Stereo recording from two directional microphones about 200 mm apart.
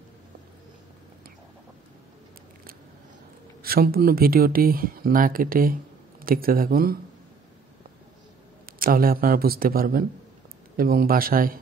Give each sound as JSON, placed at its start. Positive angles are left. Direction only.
{"t": 3.6, "sound": "speech", "side_deg": -50}
{"t": 8.6, "sound": "speech", "side_deg": -45}